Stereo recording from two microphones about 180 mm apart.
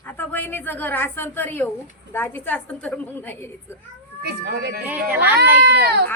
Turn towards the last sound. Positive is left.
turn(degrees=-70)  # may be behind; listen again after turning